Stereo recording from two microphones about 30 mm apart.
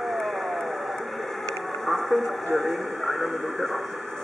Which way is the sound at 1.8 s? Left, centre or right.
Centre.